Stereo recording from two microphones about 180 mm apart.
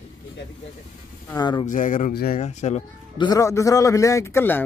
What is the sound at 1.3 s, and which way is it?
Speech, 25° left (ahead or behind).